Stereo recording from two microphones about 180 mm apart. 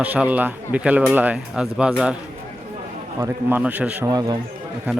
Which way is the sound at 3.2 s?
10° right (ahead or behind).